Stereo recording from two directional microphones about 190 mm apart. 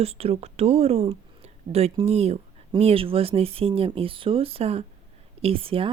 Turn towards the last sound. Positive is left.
turn(degrees=-30)  # may be behind; listen again after turning